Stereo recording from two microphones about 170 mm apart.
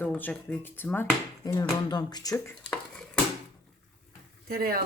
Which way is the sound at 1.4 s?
25° left (ahead or behind).